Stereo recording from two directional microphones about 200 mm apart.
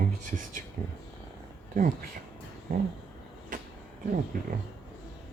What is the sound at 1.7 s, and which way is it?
Speech, 45° right (ahead or behind).